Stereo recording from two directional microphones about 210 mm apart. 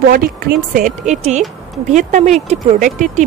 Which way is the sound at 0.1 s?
45° right (ahead or behind).